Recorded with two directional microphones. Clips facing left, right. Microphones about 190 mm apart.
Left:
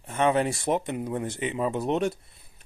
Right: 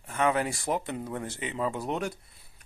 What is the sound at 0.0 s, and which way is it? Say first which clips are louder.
Speech: left 3 dB; 25° left (ahead or behind).